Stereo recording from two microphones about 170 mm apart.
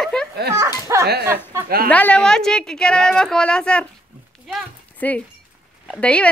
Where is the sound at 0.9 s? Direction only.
15° right (ahead or behind).